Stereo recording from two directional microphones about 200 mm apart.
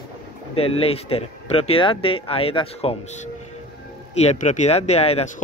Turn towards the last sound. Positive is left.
turn(degrees=30)  # may be behind; listen again after turning